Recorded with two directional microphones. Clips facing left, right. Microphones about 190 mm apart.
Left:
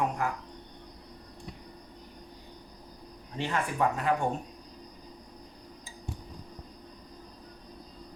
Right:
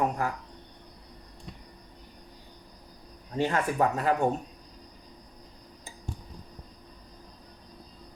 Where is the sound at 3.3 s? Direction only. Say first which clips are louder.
Right 5 dB; 45° right (ahead or behind).